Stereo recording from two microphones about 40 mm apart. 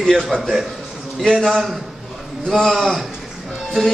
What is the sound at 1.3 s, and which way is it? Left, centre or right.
Speech, centre.